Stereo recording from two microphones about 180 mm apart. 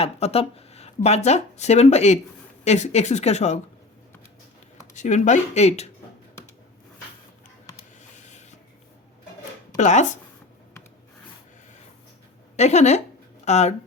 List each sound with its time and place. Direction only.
0.0 s speech: 35° left (ahead or behind)
4.9 s speech: 40° left (ahead or behind)
8.1 s a sound: 40° left (ahead or behind)
9.7 s speech: 40° left (ahead or behind)
12.5 s speech: 40° left (ahead or behind)